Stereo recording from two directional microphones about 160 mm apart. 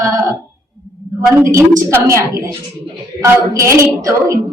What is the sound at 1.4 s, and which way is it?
A woman's voice, 15° right (ahead or behind).